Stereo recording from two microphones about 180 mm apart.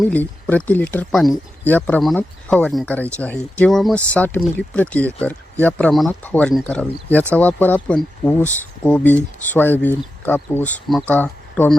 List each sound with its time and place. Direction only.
0.0 s speech: 10° left (ahead or behind)